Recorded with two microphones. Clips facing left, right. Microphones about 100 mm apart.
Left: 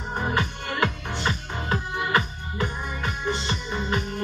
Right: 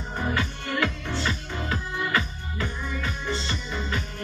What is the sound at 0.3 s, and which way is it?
Music, 20° left (ahead or behind).